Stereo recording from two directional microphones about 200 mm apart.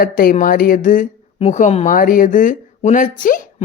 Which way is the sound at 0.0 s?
45° left (ahead or behind).